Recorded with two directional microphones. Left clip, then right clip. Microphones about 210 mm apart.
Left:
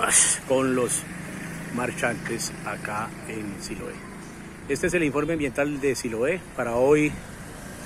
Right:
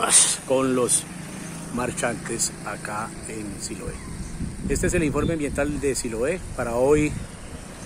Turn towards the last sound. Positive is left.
turn(degrees=-5)  # may be behind; listen again after turning